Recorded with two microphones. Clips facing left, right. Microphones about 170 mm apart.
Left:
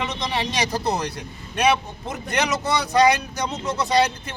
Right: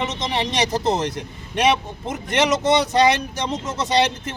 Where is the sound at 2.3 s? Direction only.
25° right (ahead or behind).